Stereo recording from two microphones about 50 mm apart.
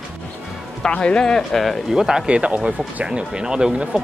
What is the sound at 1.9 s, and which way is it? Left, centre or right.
Speech, centre.